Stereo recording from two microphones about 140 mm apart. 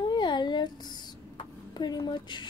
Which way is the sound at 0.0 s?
30° left (ahead or behind).